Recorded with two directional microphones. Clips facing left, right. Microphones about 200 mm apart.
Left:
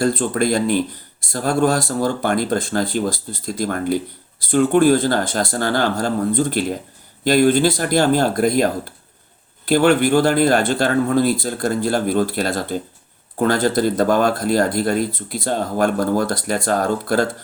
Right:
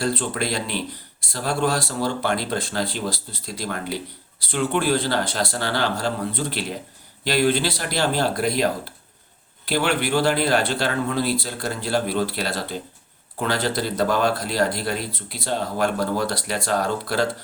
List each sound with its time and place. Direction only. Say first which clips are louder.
0.0 s speech: left 6 dB; 45° left (ahead or behind)